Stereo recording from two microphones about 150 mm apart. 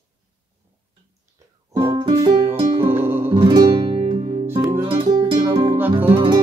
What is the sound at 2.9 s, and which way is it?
Music, 15° right (ahead or behind).